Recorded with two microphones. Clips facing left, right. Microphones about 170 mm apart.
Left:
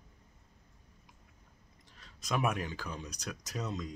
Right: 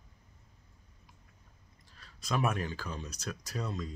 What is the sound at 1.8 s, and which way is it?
Speech, 20° left (ahead or behind).